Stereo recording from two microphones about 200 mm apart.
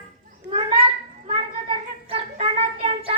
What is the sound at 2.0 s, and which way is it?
Child singing, 30° right (ahead or behind).